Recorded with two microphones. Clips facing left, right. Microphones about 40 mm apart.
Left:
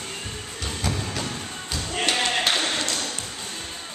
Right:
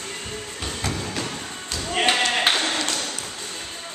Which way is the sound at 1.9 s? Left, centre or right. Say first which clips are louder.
Right 4 dB; right.